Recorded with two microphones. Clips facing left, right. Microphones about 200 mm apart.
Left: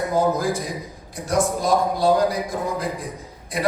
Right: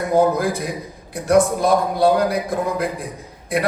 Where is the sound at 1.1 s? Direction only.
60° right (ahead or behind).